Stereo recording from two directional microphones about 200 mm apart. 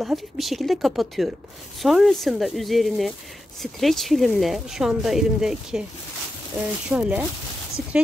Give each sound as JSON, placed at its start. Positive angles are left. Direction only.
{"t": 0.0, "sound": "speech", "side_deg": 0}
{"t": 6.9, "sound": "speech", "side_deg": -5}